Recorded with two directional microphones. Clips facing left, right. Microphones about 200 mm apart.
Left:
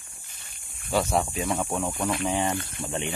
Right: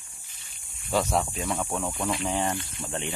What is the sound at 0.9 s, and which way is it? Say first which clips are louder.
Speech: left 1 dB; centre (ahead or behind).